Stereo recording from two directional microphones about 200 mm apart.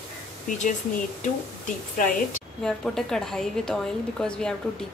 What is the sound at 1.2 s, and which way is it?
Speech, 40° left (ahead or behind).